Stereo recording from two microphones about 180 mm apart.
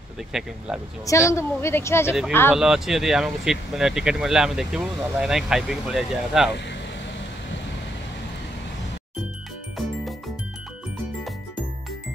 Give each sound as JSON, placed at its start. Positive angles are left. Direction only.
{"t": 0.3, "sound": "speech", "side_deg": 0}
{"t": 1.0, "sound": "a woman's voice", "side_deg": 15}
{"t": 2.5, "sound": "speech", "side_deg": -5}
{"t": 9.8, "sound": "music", "side_deg": 0}